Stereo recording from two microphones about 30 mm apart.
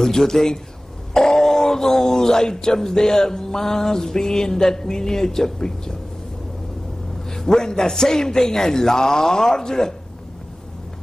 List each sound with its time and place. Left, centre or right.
0.0 s a man's voice: centre
7.2 s speech: centre